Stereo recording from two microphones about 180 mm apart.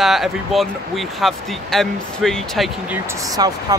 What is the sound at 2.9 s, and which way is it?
Speech, 15° right (ahead or behind).